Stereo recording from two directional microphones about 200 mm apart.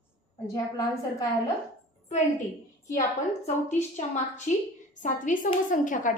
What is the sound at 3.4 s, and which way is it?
A woman's voice, 35° left (ahead or behind).